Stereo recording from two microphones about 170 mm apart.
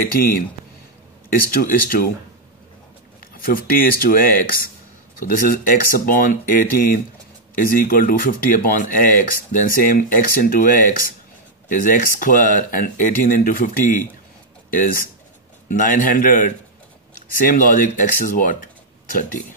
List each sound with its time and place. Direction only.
0.1 s speech: 55° left (ahead or behind)
1.5 s speech: 55° left (ahead or behind)
3.4 s speech: 60° left (ahead or behind)